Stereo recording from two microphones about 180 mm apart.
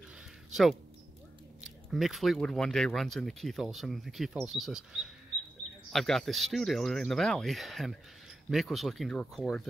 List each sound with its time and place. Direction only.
0.5 s speech: centre (ahead or behind)